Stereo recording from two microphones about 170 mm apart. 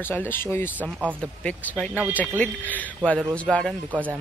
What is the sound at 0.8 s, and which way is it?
Speech, 10° right (ahead or behind).